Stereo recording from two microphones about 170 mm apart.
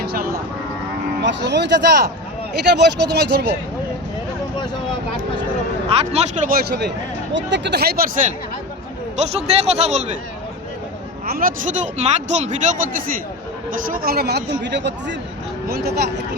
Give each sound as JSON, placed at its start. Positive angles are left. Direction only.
{"t": 0.0, "sound": "music", "side_deg": -65}
{"t": 1.2, "sound": "a man's voice", "side_deg": -90}
{"t": 5.9, "sound": "a man's voice", "side_deg": -35}
{"t": 6.5, "sound": "speech", "side_deg": -75}
{"t": 7.3, "sound": "speech", "side_deg": -90}
{"t": 9.1, "sound": "a man's voice", "side_deg": -40}
{"t": 11.3, "sound": "speech", "side_deg": -55}
{"t": 13.8, "sound": "speech", "side_deg": -60}
{"t": 15.7, "sound": "speech", "side_deg": -70}